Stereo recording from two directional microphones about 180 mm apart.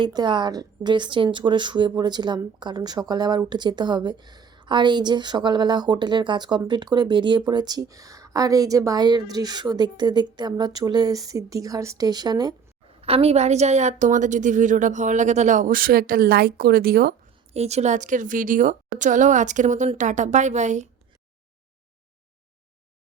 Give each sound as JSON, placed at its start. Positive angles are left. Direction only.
{"t": 0.0, "sound": "a woman's voice", "side_deg": -25}
{"t": 13.0, "sound": "a woman's voice", "side_deg": -35}
{"t": 17.5, "sound": "a woman's voice", "side_deg": -35}